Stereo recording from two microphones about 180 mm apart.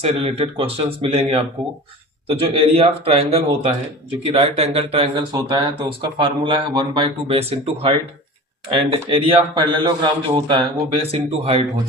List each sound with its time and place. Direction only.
0.0 s a man's voice: 35° right (ahead or behind)